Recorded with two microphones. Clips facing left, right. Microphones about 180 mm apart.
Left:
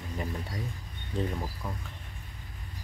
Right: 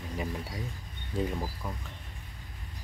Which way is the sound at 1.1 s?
5° right (ahead or behind).